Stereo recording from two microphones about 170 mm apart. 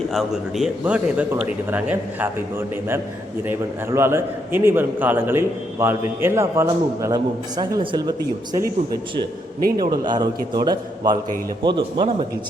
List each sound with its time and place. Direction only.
0.1 s a man's voice: centre (ahead or behind); by 12.1 s 30° right (ahead or behind)